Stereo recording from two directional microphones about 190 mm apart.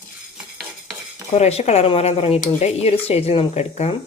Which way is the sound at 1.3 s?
35° left (ahead or behind).